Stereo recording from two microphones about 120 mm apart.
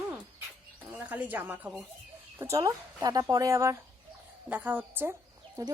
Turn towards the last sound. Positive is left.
turn(degrees=-30)  # may be behind; listen again after turning